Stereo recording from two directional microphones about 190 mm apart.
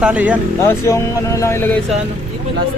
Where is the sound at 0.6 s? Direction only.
15° left (ahead or behind).